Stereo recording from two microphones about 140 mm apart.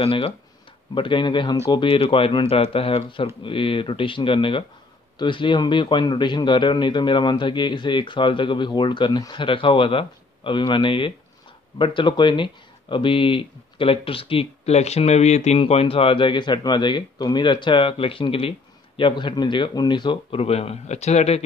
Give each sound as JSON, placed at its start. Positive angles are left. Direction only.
{"t": 0.0, "sound": "speech", "side_deg": 40}